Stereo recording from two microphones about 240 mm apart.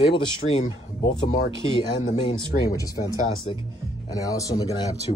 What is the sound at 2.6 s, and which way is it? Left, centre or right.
Speech, centre.